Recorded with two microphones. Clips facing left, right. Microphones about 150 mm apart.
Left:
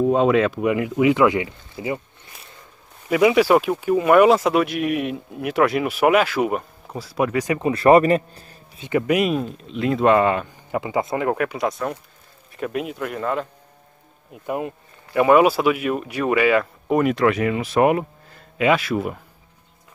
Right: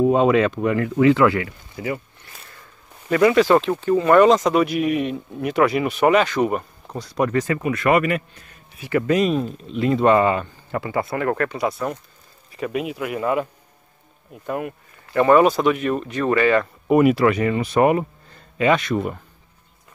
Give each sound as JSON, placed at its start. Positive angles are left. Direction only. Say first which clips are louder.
{"t": 0.0, "sound": "speech", "louder": "right 1 dB", "side_deg": 0}
{"t": 3.1, "sound": "speech", "louder": "even", "side_deg": 10}
{"t": 7.6, "sound": "speech", "louder": "left 7 dB", "side_deg": 30}
{"t": 10.7, "sound": "speech", "louder": "left 1 dB", "side_deg": 15}
{"t": 11.5, "sound": "speech", "louder": "even", "side_deg": 0}
{"t": 14.3, "sound": "speech", "louder": "even", "side_deg": 10}
{"t": 16.8, "sound": "speech", "louder": "right 5 dB", "side_deg": -5}